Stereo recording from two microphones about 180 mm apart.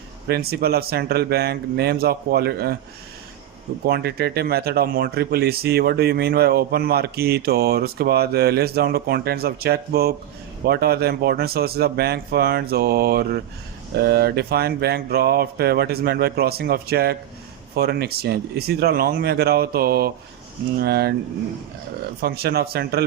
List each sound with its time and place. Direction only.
0.3 s speech: 60° right (ahead or behind)
3.8 s speech: 60° right (ahead or behind)
22.2 s speech: 60° right (ahead or behind)